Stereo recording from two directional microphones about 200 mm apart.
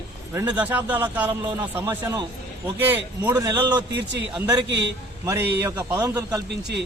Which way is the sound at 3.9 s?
60° right (ahead or behind).